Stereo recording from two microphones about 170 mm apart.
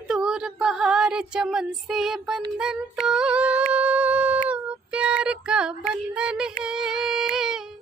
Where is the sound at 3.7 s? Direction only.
10° right (ahead or behind).